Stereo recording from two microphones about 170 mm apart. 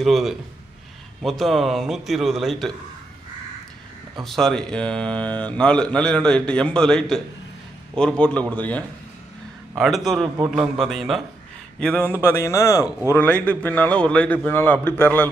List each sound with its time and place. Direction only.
0.0 s speech: centre (ahead or behind)
4.2 s a man's voice: centre (ahead or behind)